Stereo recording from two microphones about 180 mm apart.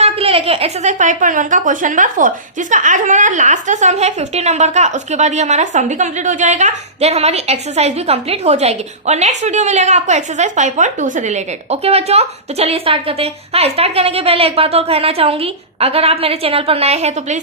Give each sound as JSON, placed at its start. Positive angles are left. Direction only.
{"t": 0.0, "sound": "a woman's voice", "side_deg": -35}